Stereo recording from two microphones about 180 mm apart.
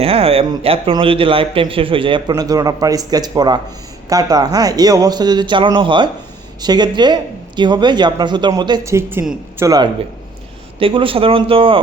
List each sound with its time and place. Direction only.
0.0 s a man's voice: 30° right (ahead or behind)